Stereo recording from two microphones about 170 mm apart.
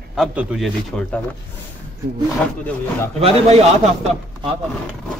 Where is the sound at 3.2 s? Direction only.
35° right (ahead or behind).